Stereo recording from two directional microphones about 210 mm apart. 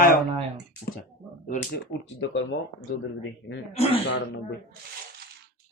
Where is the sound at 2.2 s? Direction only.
60° left (ahead or behind).